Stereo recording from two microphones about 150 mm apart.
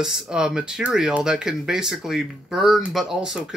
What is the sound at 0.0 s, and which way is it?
Speech, 5° right (ahead or behind).